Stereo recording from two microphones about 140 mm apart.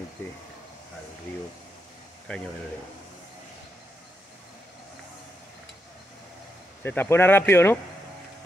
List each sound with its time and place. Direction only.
2.3 s speech: 10° left (ahead or behind)
6.8 s speech: 15° left (ahead or behind)